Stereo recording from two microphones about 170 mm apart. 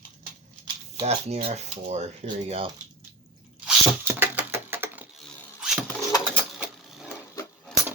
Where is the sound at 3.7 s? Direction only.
10° right (ahead or behind).